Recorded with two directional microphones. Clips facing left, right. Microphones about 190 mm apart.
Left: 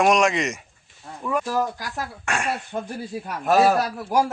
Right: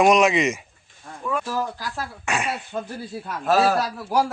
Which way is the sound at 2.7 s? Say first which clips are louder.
Left 1 dB; 15° left (ahead or behind).